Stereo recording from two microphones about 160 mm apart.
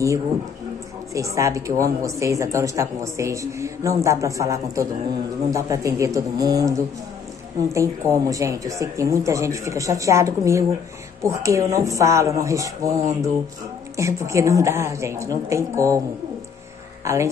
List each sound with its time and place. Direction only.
1.1 s a woman's voice: 20° right (ahead or behind)
17.0 s speech: 20° right (ahead or behind)